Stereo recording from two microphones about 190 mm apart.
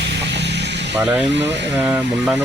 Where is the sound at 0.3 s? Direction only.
65° right (ahead or behind).